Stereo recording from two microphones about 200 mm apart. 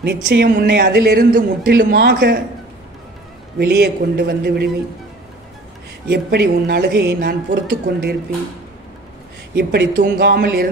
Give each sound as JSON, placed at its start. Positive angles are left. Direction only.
{"t": 0.0, "sound": "a man's voice", "side_deg": -55}
{"t": 3.5, "sound": "a man's voice", "side_deg": -55}
{"t": 6.0, "sound": "a man's voice", "side_deg": -55}
{"t": 9.6, "sound": "a man's voice", "side_deg": -55}